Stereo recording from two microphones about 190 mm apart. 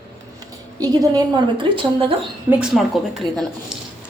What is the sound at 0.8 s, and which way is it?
A woman's voice, 20° right (ahead or behind).